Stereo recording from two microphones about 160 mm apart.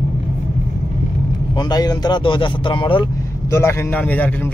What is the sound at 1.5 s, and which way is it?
Speech, 25° left (ahead or behind).